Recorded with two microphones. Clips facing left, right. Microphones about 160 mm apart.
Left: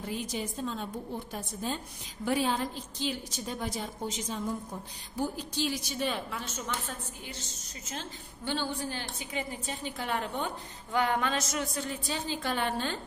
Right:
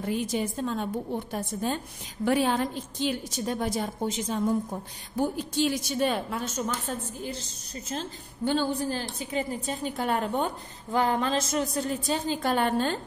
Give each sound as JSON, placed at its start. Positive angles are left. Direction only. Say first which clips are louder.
{"t": 0.0, "sound": "a woman's voice", "louder": "right 7 dB", "side_deg": -55}